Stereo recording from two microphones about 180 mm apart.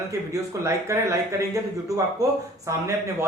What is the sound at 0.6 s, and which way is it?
A man's voice, 15° right (ahead or behind).